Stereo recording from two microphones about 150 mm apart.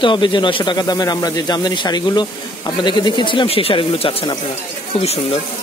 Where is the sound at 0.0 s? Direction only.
30° left (ahead or behind).